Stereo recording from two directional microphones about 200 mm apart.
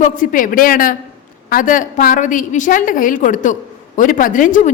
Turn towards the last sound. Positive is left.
turn(degrees=40)  # may be behind; listen again after turning